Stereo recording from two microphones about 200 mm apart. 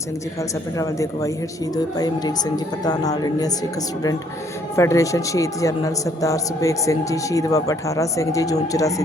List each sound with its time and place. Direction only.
0.8 s a woman's voice: 15° left (ahead or behind)